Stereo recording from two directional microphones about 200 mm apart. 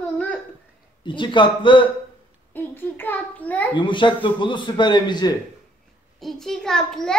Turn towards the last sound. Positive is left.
turn(degrees=5)  # may be behind; listen again after turning